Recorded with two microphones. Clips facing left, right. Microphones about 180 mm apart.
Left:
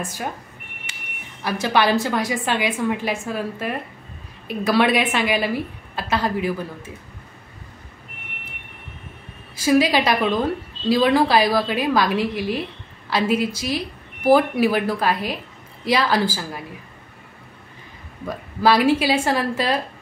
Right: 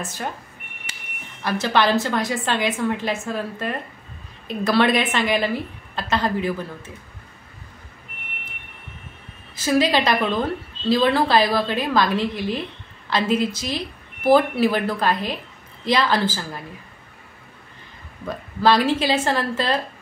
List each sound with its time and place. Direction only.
0.0 s a woman's voice: 10° left (ahead or behind)
0.9 s a sound: 40° right (ahead or behind)
1.4 s a woman's voice: 10° left (ahead or behind)
9.6 s a woman's voice: 10° left (ahead or behind)
18.2 s a woman's voice: 10° left (ahead or behind)